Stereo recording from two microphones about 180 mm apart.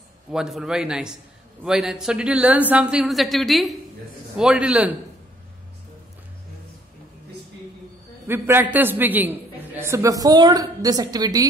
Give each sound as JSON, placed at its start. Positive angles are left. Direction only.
{"t": 0.3, "sound": "a woman's voice", "side_deg": -5}
{"t": 8.3, "sound": "a man's voice", "side_deg": -10}